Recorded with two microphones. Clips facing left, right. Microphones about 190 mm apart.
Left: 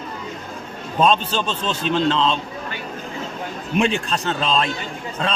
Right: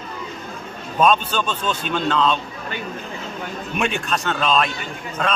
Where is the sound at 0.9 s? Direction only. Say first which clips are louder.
Even; 30° left (ahead or behind).